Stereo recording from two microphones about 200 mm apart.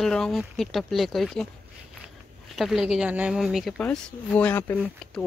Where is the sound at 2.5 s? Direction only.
Centre (ahead or behind).